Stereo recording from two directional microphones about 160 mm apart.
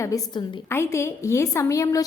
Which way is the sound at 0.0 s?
20° left (ahead or behind).